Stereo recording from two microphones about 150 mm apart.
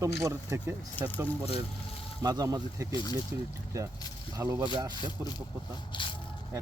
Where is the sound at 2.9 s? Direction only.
30° left (ahead or behind).